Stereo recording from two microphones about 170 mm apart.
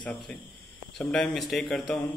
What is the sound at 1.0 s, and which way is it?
Mantra, 5° left (ahead or behind).